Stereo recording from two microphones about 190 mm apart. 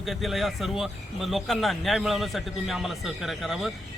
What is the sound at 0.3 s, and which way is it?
A man's voice, centre (ahead or behind).